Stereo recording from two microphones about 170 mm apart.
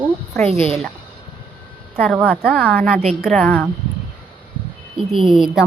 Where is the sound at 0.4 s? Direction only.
35° right (ahead or behind).